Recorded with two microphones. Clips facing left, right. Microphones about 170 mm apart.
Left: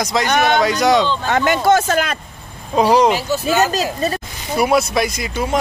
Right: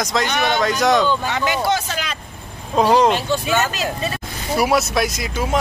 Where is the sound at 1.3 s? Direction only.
50° left (ahead or behind).